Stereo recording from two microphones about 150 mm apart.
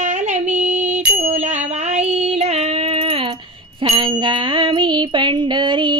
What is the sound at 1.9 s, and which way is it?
Child singing, 45° right (ahead or behind).